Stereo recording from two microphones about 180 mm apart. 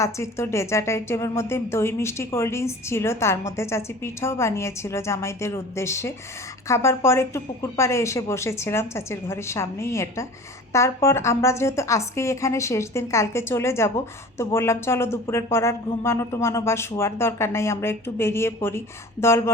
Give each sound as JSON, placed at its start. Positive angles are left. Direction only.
{"t": 0.0, "sound": "a woman's voice", "side_deg": 15}